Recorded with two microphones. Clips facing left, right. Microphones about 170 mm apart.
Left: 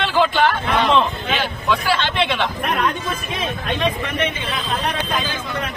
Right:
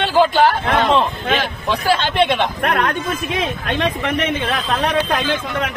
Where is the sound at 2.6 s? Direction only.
75° right (ahead or behind).